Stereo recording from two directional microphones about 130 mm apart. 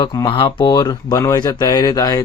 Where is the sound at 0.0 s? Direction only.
35° left (ahead or behind).